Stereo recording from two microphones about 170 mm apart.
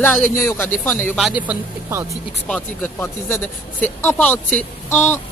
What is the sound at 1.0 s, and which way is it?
Speech, 5° right (ahead or behind).